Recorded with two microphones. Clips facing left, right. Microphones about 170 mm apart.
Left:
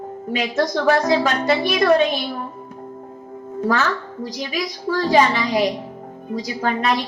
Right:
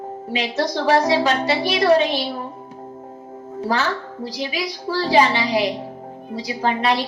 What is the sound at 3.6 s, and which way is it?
A woman's voice, 50° left (ahead or behind).